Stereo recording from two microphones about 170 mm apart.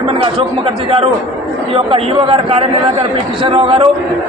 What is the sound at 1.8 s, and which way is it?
A man's voice, 35° right (ahead or behind).